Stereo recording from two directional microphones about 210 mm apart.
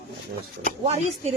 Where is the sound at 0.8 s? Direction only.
30° right (ahead or behind).